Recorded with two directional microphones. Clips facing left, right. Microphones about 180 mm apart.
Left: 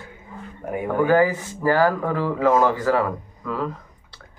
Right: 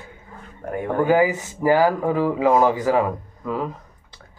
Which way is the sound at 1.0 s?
15° right (ahead or behind).